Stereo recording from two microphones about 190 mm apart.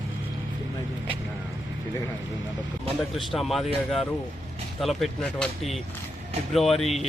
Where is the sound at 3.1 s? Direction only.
Centre (ahead or behind).